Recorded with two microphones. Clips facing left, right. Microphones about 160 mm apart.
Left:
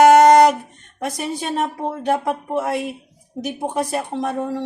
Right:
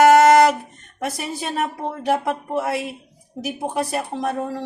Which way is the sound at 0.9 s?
5° right (ahead or behind).